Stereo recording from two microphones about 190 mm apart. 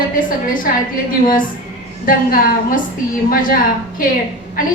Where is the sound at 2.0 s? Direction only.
45° left (ahead or behind).